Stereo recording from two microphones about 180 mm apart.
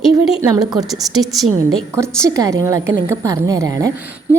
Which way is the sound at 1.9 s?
15° right (ahead or behind).